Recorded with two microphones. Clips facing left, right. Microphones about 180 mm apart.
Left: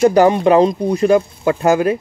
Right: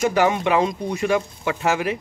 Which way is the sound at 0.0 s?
35° left (ahead or behind).